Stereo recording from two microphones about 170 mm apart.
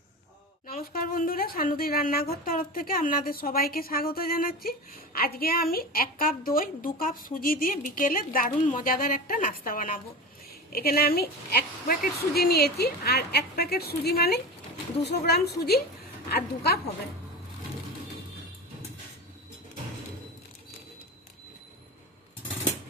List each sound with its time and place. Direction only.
0.7 s a woman's voice: 60° left (ahead or behind)
10.7 s a woman's voice: 65° left (ahead or behind)